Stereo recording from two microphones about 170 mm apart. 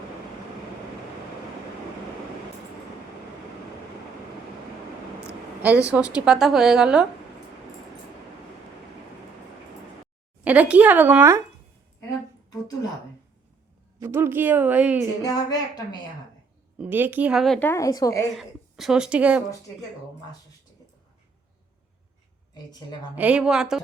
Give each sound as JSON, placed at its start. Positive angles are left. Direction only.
{"t": 5.9, "sound": "a woman's voice", "side_deg": -5}
{"t": 10.4, "sound": "speech", "side_deg": -10}
{"t": 12.1, "sound": "speech", "side_deg": 20}
{"t": 14.0, "sound": "speech", "side_deg": -15}
{"t": 15.2, "sound": "a woman's voice", "side_deg": 20}
{"t": 16.7, "sound": "speech", "side_deg": -10}
{"t": 17.7, "sound": "a woman's voice", "side_deg": 20}
{"t": 18.3, "sound": "a woman's voice", "side_deg": 0}
{"t": 22.5, "sound": "a woman's voice", "side_deg": 25}
{"t": 23.1, "sound": "a woman's voice", "side_deg": -5}